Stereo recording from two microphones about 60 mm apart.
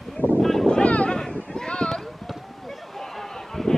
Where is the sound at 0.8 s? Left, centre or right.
Centre.